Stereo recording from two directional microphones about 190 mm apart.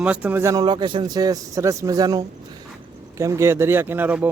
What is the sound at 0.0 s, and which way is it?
A man's voice, 5° right (ahead or behind).